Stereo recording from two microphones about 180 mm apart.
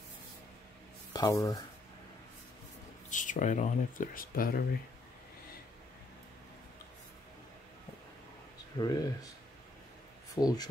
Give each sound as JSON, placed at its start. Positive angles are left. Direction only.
{"t": 1.1, "sound": "speech", "side_deg": 20}
{"t": 3.1, "sound": "speech", "side_deg": 45}
{"t": 8.7, "sound": "speech", "side_deg": 20}
{"t": 10.3, "sound": "speech", "side_deg": 20}